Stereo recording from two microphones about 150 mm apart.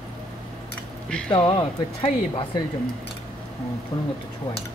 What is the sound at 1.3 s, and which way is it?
Speech, 35° left (ahead or behind).